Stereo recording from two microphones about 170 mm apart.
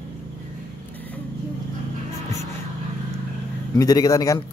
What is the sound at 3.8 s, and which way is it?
Speech, 20° left (ahead or behind).